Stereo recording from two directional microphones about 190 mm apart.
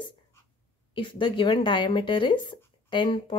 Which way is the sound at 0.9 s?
25° left (ahead or behind).